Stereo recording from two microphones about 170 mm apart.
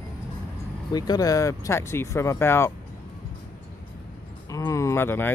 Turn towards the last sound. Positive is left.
turn(degrees=15)  # may be behind; listen again after turning